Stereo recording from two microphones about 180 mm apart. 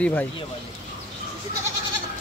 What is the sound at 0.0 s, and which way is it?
Speech, 10° left (ahead or behind).